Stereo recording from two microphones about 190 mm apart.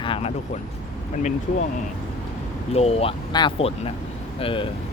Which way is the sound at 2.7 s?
35° left (ahead or behind).